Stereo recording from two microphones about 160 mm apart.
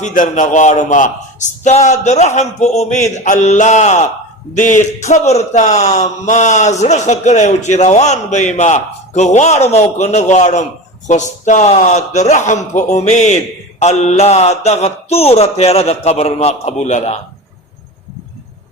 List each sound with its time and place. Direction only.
0.0 s a man's voice: 55° left (ahead or behind)